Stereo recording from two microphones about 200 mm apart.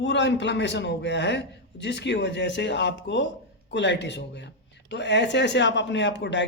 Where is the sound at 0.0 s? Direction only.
65° left (ahead or behind).